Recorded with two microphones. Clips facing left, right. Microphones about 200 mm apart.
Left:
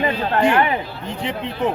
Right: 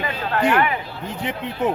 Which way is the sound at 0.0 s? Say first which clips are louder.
Left 4 dB; 30° left (ahead or behind).